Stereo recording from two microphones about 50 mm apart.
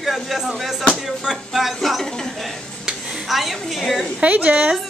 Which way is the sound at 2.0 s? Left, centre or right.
Centre.